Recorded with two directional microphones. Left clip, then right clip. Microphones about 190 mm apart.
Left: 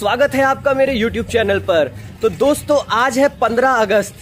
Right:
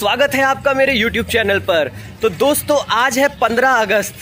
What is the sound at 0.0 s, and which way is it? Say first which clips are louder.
Speech: even; centre (ahead or behind).